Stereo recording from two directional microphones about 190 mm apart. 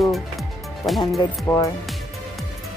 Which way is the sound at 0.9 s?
Centre (ahead or behind).